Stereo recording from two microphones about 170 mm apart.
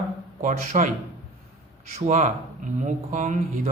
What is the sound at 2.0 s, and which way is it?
A man's voice, 45° right (ahead or behind).